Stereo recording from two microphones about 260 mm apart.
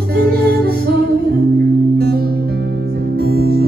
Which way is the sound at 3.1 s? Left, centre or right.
Right.